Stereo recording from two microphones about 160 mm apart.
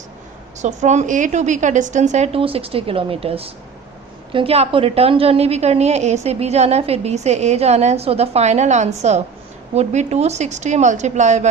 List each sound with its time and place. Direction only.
0.6 s a woman's voice: 45° right (ahead or behind)